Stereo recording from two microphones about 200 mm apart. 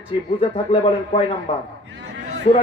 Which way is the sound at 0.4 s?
25° left (ahead or behind).